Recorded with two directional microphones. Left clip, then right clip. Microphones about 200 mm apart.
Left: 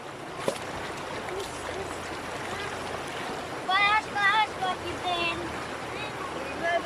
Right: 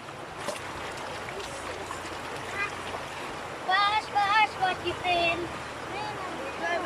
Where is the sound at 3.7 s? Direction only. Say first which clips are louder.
Left 1 dB; centre (ahead or behind).